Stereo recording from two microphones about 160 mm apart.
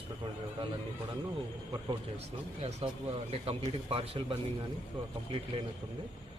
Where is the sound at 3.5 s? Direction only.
35° right (ahead or behind).